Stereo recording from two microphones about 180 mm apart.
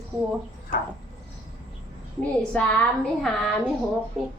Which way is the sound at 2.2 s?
5° left (ahead or behind).